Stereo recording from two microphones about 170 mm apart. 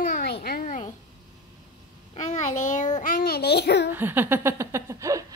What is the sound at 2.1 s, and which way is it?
Child singing, 40° left (ahead or behind).